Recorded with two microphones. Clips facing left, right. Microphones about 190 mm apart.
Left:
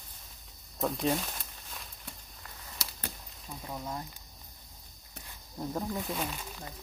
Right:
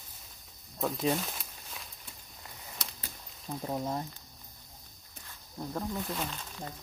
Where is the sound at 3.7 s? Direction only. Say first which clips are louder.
Right 5 dB; 25° right (ahead or behind).